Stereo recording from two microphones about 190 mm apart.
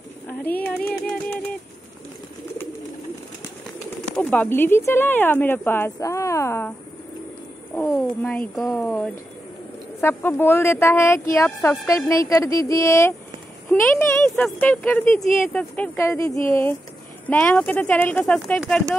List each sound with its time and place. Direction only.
0.3 s speech: 10° left (ahead or behind)
4.2 s speech: 10° left (ahead or behind)
7.7 s speech: 10° left (ahead or behind)
10.0 s speech: 10° left (ahead or behind)